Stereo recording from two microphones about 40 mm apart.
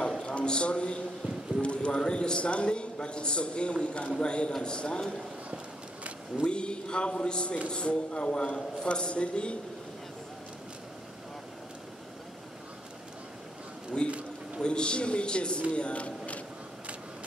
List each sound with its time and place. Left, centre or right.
0.2 s a man's voice: left
6.4 s a man's voice: left
13.9 s a man's voice: left
15.7 s a sound: left